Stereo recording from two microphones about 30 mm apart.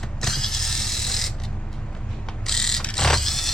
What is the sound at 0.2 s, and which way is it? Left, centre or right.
Mechanisms, centre.